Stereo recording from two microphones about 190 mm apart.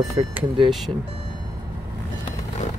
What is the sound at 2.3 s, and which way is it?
Vehicle, 40° left (ahead or behind).